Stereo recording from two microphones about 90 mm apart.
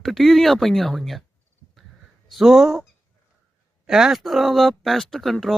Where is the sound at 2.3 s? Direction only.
Centre (ahead or behind).